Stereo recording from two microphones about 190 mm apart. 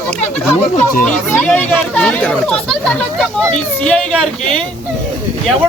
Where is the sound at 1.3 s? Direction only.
10° left (ahead or behind).